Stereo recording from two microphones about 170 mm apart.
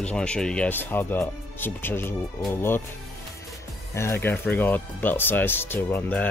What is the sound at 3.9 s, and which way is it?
Speech, 15° left (ahead or behind).